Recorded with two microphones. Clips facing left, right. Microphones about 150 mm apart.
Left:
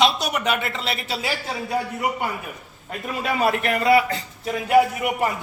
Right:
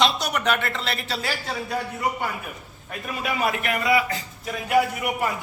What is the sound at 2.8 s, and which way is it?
A man's voice, 30° left (ahead or behind).